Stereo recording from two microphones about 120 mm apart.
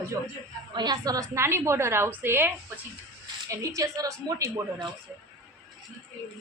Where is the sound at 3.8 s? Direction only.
30° right (ahead or behind).